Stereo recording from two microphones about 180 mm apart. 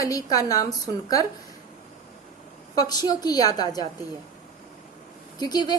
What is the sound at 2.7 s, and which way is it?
A woman's voice, 20° left (ahead or behind).